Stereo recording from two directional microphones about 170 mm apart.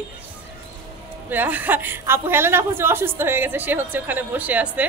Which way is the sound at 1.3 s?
10° right (ahead or behind).